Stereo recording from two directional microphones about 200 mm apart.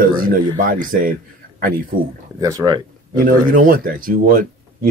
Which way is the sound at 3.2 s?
45° right (ahead or behind).